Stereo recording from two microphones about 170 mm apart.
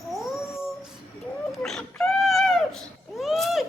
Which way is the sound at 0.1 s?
Centre (ahead or behind).